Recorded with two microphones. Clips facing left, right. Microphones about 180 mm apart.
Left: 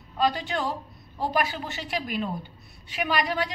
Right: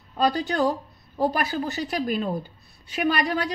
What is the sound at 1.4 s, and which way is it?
A woman's voice, 40° right (ahead or behind).